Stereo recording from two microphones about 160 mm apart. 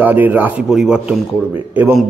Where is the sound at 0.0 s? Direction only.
10° right (ahead or behind).